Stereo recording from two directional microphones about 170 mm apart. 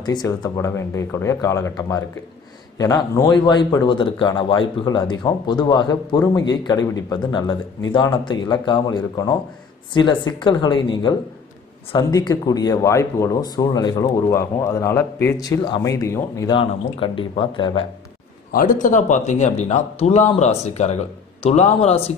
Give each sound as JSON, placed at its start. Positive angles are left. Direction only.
{"t": 0.0, "sound": "speech", "side_deg": 25}
{"t": 18.5, "sound": "speech", "side_deg": 55}